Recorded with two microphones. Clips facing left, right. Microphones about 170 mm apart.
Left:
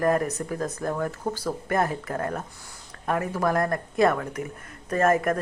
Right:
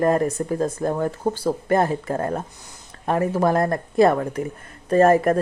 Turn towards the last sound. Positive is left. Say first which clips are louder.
# right 6 dB
turn(degrees=-30)  # may be behind; listen again after turning